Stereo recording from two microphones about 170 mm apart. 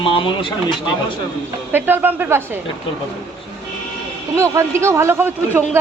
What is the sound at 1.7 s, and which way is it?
Speech, 10° right (ahead or behind).